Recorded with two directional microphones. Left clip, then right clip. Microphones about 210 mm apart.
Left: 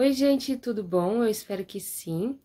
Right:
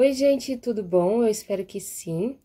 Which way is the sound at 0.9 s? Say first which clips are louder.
Right 4 dB; 5° left (ahead or behind).